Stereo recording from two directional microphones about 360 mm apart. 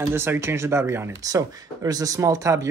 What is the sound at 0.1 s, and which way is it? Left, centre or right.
Speech, centre.